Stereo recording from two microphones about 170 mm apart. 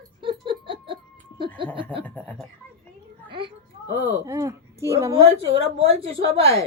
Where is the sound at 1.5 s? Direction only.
30° right (ahead or behind).